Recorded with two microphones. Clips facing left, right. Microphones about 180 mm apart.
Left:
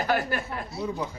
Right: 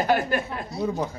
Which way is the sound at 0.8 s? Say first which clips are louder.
Right 5 dB; 40° right (ahead or behind).